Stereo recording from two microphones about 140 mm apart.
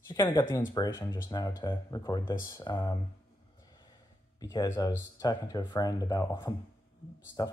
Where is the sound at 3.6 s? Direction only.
30° left (ahead or behind).